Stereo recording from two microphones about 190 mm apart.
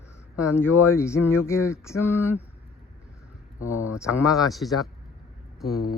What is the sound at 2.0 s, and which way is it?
Speech, 10° right (ahead or behind).